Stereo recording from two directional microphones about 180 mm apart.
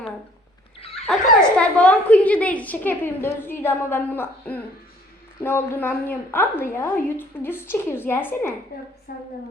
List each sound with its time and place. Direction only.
1.0 s a woman's voice: 5° left (ahead or behind)
9.1 s a woman's voice: 55° left (ahead or behind)